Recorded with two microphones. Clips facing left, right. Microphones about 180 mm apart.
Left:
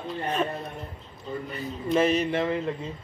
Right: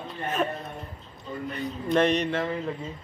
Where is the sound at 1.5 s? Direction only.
5° left (ahead or behind).